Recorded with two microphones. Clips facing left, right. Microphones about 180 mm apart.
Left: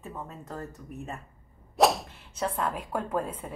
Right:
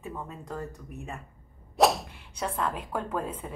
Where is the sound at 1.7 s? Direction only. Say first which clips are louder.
Even; centre (ahead or behind).